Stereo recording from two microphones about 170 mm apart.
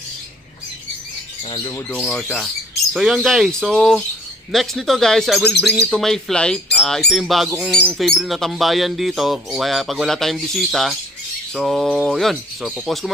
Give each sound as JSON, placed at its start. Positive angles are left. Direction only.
{"t": 1.5, "sound": "speech", "side_deg": 25}
{"t": 2.0, "sound": "speech", "side_deg": 0}